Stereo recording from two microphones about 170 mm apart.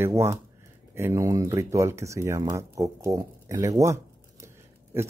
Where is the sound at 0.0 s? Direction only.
15° right (ahead or behind).